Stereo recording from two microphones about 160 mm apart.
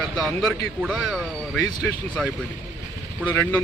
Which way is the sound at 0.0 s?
Centre (ahead or behind).